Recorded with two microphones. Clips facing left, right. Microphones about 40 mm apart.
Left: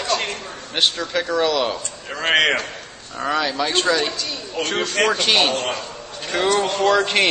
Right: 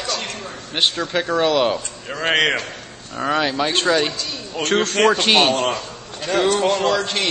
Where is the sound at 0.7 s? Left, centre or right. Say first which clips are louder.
Even; centre.